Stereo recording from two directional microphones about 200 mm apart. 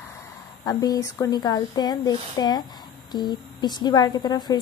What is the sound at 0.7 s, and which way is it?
A woman's voice, 20° left (ahead or behind).